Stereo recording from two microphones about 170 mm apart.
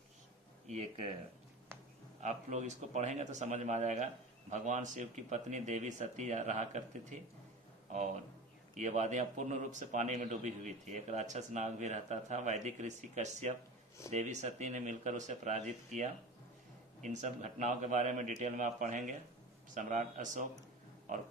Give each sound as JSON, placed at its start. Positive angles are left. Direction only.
{"t": 0.7, "sound": "speech", "side_deg": -40}
{"t": 2.2, "sound": "a man's voice", "side_deg": -45}
{"t": 8.7, "sound": "a man's voice", "side_deg": -45}
{"t": 21.1, "sound": "pig", "side_deg": -45}